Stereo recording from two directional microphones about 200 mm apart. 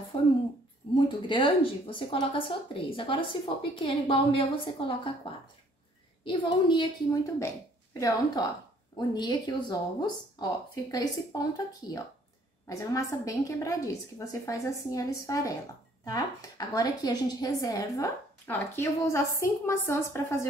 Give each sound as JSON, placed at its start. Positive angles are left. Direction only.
{"t": 0.9, "sound": "speech", "side_deg": 25}
{"t": 8.9, "sound": "a woman's voice", "side_deg": 20}